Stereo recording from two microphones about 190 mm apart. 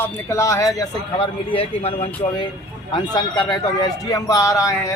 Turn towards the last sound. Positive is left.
turn(degrees=15)  # may be behind; listen again after turning